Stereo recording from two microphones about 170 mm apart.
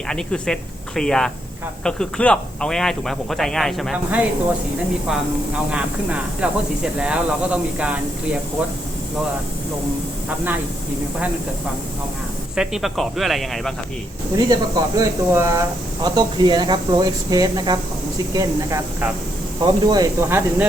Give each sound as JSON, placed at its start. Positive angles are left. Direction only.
{"t": 0.1, "sound": "speech", "side_deg": 5}
{"t": 5.7, "sound": "speech", "side_deg": -5}
{"t": 10.2, "sound": "speech", "side_deg": -10}
{"t": 12.5, "sound": "speech", "side_deg": 0}
{"t": 14.3, "sound": "speech", "side_deg": -20}